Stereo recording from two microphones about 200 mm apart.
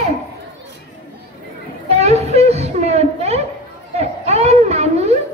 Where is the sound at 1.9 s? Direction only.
35° right (ahead or behind).